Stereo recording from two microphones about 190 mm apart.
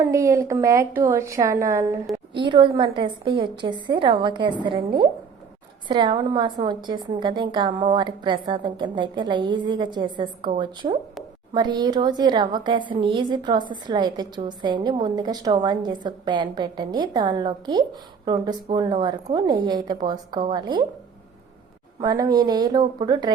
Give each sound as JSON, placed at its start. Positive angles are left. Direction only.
{"t": 0.0, "sound": "a woman's voice", "side_deg": -15}
{"t": 22.0, "sound": "a woman's voice", "side_deg": -20}